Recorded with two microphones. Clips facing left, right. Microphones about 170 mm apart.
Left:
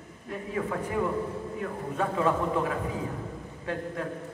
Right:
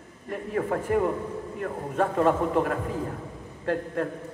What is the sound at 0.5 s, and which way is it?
A man's voice, 50° right (ahead or behind).